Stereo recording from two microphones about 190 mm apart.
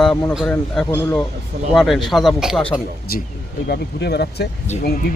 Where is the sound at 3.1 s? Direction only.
50° left (ahead or behind).